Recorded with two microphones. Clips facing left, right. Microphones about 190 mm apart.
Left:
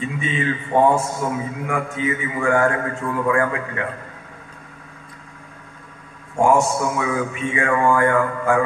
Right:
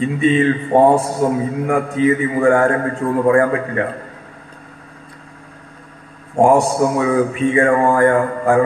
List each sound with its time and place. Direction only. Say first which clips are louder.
0.0 s a man's voice: right 9 dB; 35° right (ahead or behind)
6.3 s a man's voice: right 4 dB; 35° right (ahead or behind)